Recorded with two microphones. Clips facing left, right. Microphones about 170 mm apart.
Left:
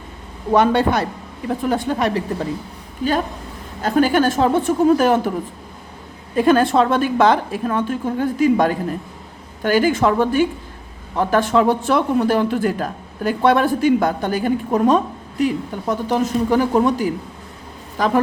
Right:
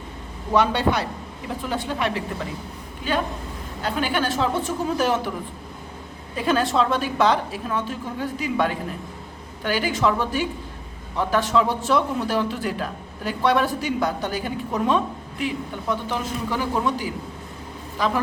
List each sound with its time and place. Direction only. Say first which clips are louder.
0.5 s a woman's voice: left 5 dB; 50° left (ahead or behind)
3.8 s speech: left 8 dB; 45° left (ahead or behind)
6.3 s a woman's voice: left 7 dB; 50° left (ahead or behind)